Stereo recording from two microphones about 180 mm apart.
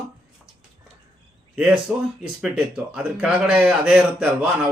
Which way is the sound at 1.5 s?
5° right (ahead or behind).